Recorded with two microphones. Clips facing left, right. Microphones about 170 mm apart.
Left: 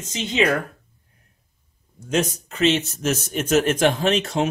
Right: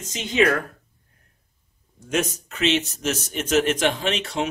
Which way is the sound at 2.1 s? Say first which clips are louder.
Left 2 dB; 30° left (ahead or behind).